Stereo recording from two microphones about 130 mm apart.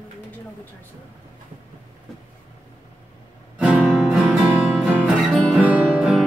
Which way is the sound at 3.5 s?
10° right (ahead or behind).